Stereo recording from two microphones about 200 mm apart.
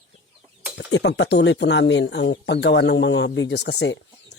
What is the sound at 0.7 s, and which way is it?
Speech, 60° left (ahead or behind).